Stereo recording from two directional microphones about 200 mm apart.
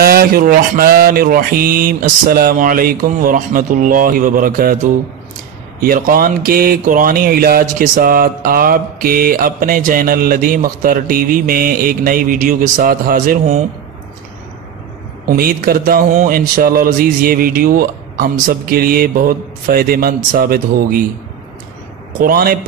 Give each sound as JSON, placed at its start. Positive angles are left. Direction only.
{"t": 0.0, "sound": "speech", "side_deg": -50}
{"t": 5.8, "sound": "speech", "side_deg": -45}
{"t": 15.2, "sound": "speech", "side_deg": -50}
{"t": 22.2, "sound": "speech", "side_deg": -45}